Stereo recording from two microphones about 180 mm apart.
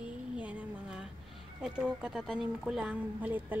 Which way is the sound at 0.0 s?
5° right (ahead or behind).